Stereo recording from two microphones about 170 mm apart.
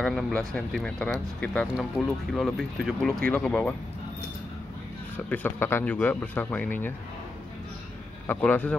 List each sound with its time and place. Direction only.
0.0 s speech: 5° left (ahead or behind)
5.1 s speech: 10° left (ahead or behind)
8.3 s speech: 10° left (ahead or behind)